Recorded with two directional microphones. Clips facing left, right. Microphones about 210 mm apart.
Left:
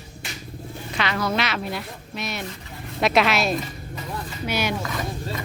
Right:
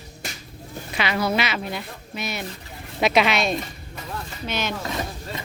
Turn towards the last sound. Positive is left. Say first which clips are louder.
# left 1 dB
turn(degrees=-25)  # may be behind; listen again after turning